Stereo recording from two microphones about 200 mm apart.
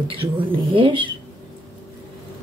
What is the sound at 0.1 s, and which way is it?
Speech, 25° right (ahead or behind).